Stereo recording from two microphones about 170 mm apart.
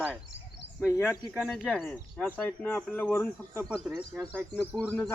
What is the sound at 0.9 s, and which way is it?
Speech, 15° left (ahead or behind).